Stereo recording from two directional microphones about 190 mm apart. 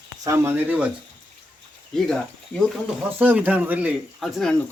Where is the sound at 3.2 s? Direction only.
10° right (ahead or behind).